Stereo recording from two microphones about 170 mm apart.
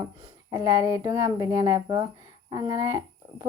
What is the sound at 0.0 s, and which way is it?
Speech, 20° right (ahead or behind).